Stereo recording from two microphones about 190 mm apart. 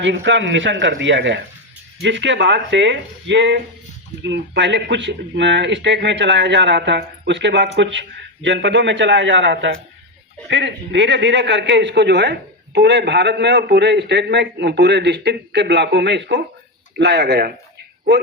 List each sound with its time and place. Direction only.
0.0 s a man's voice: 70° right (ahead or behind)